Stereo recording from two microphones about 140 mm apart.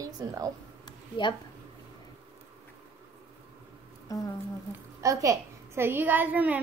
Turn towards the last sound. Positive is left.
turn(degrees=-10)  # may be behind; listen again after turning